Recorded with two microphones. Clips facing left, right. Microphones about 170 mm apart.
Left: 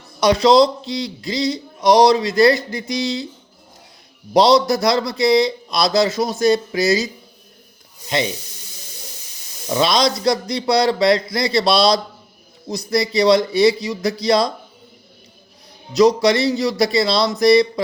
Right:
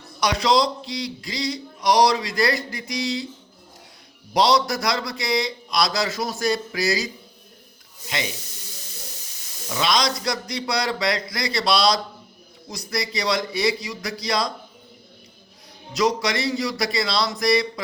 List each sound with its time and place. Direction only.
0.2 s speech: 25° left (ahead or behind)
4.4 s speech: 25° left (ahead or behind)
9.6 s speech: 30° left (ahead or behind)
16.0 s speech: 25° left (ahead or behind)